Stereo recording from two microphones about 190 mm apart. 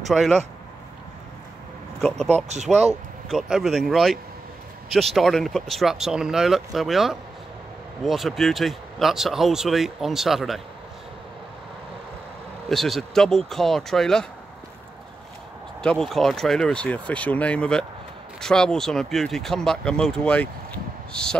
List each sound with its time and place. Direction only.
0.1 s speech: centre (ahead or behind)
2.0 s speech: 5° left (ahead or behind)
2.3 s speech: 35° right (ahead or behind)
3.3 s speech: centre (ahead or behind)
12.6 s speech: centre (ahead or behind)
15.8 s speech: 5° left (ahead or behind)